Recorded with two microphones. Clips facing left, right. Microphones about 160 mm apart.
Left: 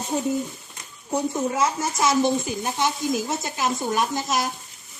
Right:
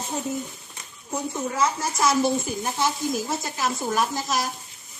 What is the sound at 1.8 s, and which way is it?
Speech, centre (ahead or behind).